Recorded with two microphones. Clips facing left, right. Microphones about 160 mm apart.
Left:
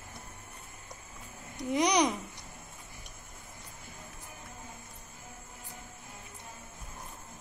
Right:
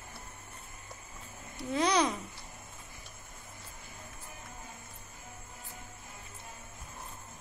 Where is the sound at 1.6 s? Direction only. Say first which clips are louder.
Left 2 dB; 15° left (ahead or behind).